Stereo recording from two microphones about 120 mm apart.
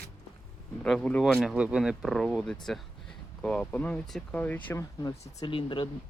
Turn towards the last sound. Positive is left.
turn(degrees=40)  # may be behind; listen again after turning